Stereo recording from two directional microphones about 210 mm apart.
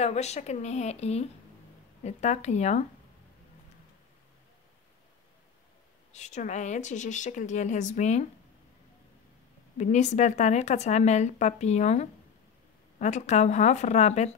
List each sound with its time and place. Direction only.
0.0 s speech: 30° left (ahead or behind)
6.1 s speech: 35° left (ahead or behind)
9.8 s speech: 35° left (ahead or behind)